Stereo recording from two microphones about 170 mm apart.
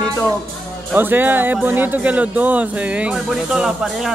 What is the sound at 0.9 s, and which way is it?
Speech, 10° right (ahead or behind).